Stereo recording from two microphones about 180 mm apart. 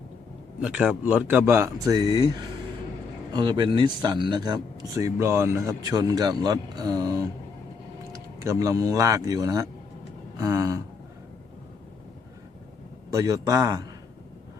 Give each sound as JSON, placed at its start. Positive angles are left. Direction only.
{"t": 0.6, "sound": "a man's voice", "side_deg": -5}
{"t": 10.3, "sound": "a sound", "side_deg": -15}
{"t": 13.1, "sound": "speech", "side_deg": -20}